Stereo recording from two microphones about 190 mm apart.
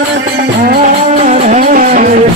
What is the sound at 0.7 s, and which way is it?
Music, 45° right (ahead or behind).